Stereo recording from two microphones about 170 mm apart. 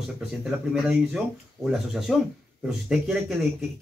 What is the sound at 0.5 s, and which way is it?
Speech, centre (ahead or behind).